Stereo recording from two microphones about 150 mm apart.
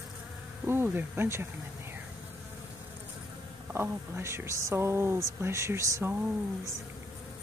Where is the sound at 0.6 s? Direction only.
15° right (ahead or behind).